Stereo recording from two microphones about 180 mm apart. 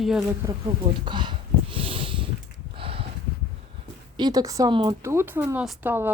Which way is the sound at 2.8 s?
30° right (ahead or behind).